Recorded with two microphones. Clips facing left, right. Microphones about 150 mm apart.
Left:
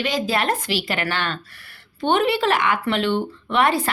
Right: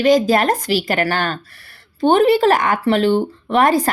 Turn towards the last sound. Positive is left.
turn(degrees=-40)  # may be behind; listen again after turning